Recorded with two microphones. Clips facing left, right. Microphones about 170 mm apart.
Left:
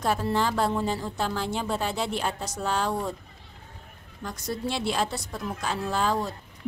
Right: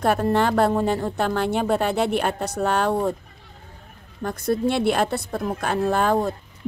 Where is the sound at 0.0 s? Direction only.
60° right (ahead or behind).